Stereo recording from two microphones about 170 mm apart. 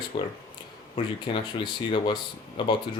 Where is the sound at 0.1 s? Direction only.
25° left (ahead or behind).